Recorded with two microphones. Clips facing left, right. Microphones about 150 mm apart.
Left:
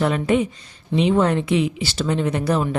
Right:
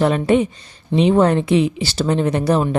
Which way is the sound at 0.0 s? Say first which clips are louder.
Right 4 dB; 30° right (ahead or behind).